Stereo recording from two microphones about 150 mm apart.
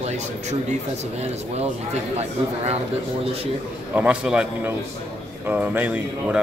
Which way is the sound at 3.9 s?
10° right (ahead or behind).